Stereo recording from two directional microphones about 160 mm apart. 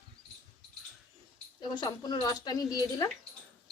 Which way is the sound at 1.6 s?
25° left (ahead or behind).